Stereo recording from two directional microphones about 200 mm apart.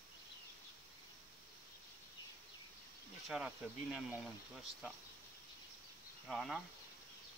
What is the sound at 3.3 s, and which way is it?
Speech, 5° right (ahead or behind).